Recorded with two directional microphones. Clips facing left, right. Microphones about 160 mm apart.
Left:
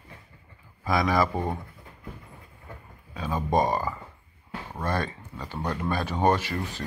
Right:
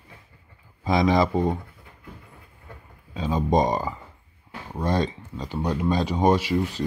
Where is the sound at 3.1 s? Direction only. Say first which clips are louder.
Right 3 dB; 20° right (ahead or behind).